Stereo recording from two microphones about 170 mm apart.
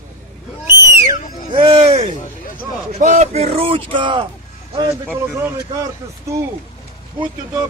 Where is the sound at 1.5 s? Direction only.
35° right (ahead or behind).